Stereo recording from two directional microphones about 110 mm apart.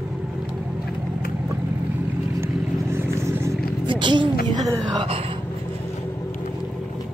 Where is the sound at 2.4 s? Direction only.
25° right (ahead or behind).